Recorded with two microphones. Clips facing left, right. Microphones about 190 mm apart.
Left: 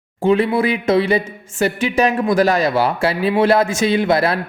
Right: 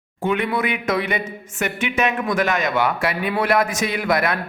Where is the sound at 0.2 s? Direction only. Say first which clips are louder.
Left 6 dB; 30° left (ahead or behind).